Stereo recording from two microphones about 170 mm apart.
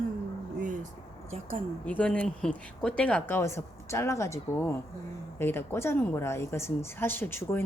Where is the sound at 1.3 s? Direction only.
35° right (ahead or behind).